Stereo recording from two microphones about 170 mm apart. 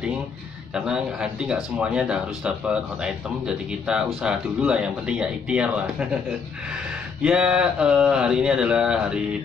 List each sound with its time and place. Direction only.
0.7 s speech: 5° right (ahead or behind)
7.2 s speech: 5° right (ahead or behind)